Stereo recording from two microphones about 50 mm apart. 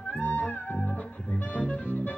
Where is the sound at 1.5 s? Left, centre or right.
Left.